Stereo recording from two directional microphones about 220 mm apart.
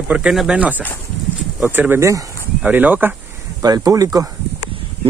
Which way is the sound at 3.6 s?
15° right (ahead or behind).